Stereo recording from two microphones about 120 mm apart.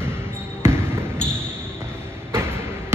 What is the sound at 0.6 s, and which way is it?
Basketball bounce, 20° right (ahead or behind).